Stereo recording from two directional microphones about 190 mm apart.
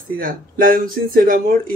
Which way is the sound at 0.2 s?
45° right (ahead or behind).